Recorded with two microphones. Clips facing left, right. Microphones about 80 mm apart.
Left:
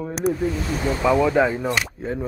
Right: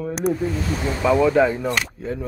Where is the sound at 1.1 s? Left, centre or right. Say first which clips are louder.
Right 2 dB; centre.